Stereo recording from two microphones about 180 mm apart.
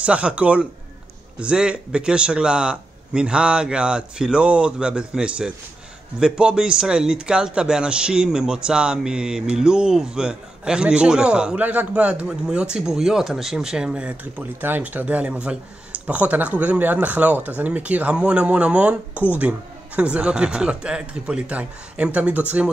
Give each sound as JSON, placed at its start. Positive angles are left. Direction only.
{"t": 0.0, "sound": "speech", "side_deg": -5}